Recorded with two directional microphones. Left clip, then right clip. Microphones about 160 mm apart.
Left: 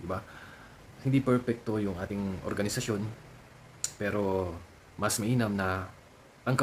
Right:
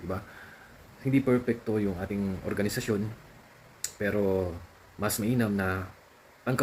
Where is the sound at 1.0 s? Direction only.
10° left (ahead or behind).